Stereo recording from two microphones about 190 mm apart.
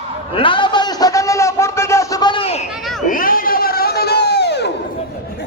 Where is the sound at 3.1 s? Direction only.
45° left (ahead or behind).